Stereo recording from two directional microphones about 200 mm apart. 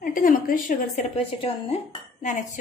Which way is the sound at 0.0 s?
45° left (ahead or behind).